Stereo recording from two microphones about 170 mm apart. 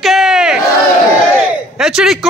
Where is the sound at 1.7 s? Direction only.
5° right (ahead or behind).